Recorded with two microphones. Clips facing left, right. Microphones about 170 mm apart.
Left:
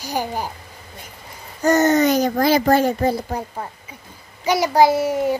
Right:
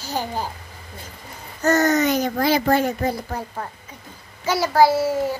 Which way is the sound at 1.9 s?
35° left (ahead or behind).